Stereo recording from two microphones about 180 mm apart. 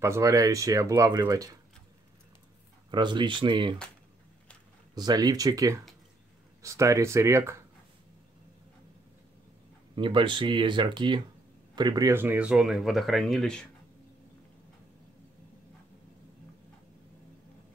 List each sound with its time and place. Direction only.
0.0 s speech: 15° right (ahead or behind)
2.9 s speech: 25° right (ahead or behind)
4.9 s speech: 20° right (ahead or behind)
9.9 s speech: 25° right (ahead or behind); by 13.7 s 5° left (ahead or behind)